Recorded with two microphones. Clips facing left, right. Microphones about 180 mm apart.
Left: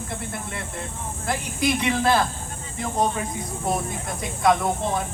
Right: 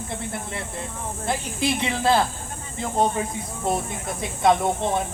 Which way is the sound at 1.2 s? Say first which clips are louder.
Left 1 dB; 25° right (ahead or behind).